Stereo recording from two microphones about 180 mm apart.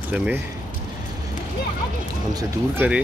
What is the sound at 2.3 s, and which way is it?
Speech, 10° right (ahead or behind).